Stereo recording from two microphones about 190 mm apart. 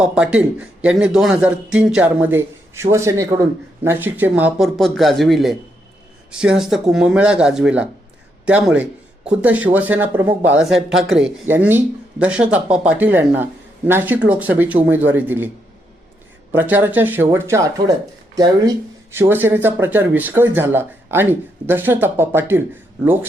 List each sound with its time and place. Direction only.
0.0 s a man's voice: 5° right (ahead or behind)
16.5 s speech: 10° right (ahead or behind)